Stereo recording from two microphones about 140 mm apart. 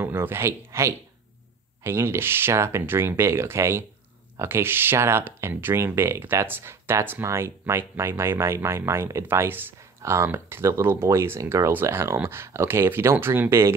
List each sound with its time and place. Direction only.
0.0 s speech: 15° right (ahead or behind)